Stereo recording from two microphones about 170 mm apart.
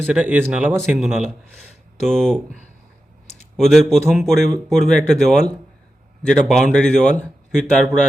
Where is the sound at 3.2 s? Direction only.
40° left (ahead or behind).